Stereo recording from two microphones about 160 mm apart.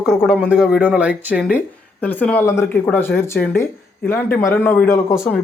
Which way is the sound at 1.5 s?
10° left (ahead or behind).